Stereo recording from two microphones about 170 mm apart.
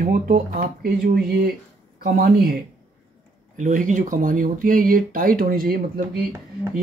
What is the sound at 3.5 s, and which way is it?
Speech, 50° right (ahead or behind).